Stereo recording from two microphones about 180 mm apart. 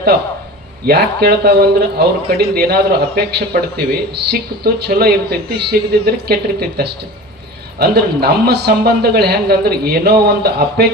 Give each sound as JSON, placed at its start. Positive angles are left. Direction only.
{"t": 0.9, "sound": "speech", "side_deg": -60}